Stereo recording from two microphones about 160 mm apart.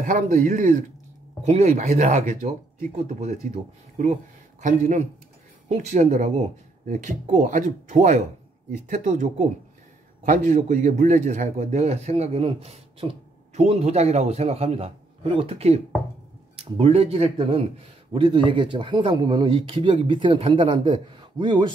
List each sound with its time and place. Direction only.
0.0 s a man's voice: 50° right (ahead or behind); by 21.7 s 30° right (ahead or behind)